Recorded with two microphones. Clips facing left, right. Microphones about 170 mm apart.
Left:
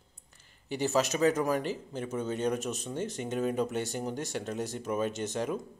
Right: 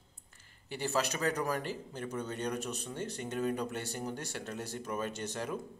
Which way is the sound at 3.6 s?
20° left (ahead or behind).